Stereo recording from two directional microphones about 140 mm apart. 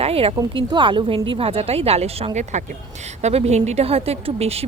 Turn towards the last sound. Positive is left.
turn(degrees=-45)  # may be behind; listen again after turning